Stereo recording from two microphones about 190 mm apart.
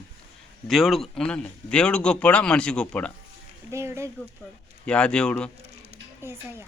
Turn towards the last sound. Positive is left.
turn(degrees=-15)  # may be behind; listen again after turning